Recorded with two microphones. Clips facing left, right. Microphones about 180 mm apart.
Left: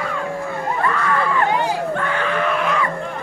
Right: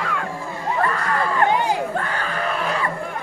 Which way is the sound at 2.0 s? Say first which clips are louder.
Left 5 dB; 40° right (ahead or behind).